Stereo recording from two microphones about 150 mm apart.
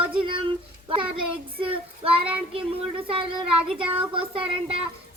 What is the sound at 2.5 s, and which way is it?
Speech, 35° right (ahead or behind).